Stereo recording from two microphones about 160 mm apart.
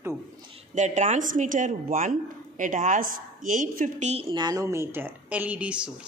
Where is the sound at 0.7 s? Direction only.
50° right (ahead or behind).